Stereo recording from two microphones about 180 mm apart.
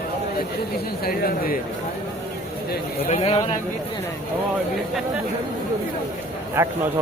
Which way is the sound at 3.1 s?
35° left (ahead or behind).